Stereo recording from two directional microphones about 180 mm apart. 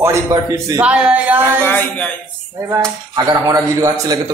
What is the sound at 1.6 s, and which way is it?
Speech, 10° left (ahead or behind).